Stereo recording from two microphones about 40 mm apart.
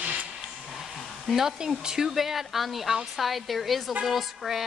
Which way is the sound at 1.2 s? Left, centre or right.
Centre.